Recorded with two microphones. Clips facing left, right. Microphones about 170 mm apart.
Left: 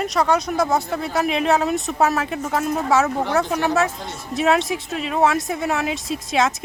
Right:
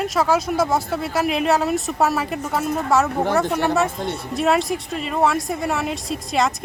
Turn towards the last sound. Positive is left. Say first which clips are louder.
# left 1 dB
turn(degrees=0)  # may be behind; listen again after turning